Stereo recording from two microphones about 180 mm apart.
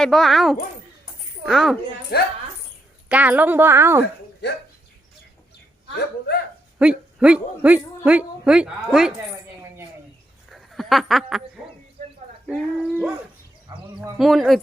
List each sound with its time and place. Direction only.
0.0 s speech: centre (ahead or behind)
2.1 s speech: 60° left (ahead or behind)
3.1 s a woman's voice: 10° right (ahead or behind)
6.7 s speech: 5° right (ahead or behind)
10.5 s a sound: centre (ahead or behind)
12.5 s speech: centre (ahead or behind)
13.7 s a sound: 20° right (ahead or behind)
14.2 s speech: centre (ahead or behind)